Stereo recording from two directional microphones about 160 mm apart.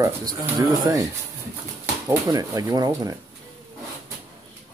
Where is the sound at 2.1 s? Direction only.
25° right (ahead or behind).